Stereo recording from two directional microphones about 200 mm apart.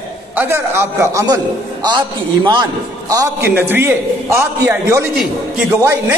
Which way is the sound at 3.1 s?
15° right (ahead or behind).